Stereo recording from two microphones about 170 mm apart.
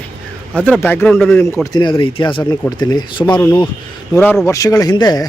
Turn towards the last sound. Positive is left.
turn(degrees=25)  # may be behind; listen again after turning